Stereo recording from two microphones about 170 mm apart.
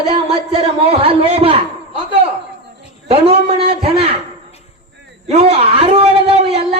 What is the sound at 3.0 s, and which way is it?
Speech, 35° right (ahead or behind).